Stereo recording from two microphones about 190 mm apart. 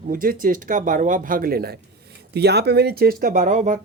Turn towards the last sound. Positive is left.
turn(degrees=-40)  # may be behind; listen again after turning